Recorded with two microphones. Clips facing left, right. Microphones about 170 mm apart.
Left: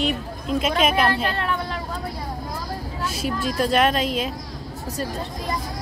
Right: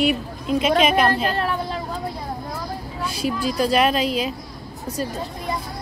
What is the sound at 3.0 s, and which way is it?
Speech, centre (ahead or behind).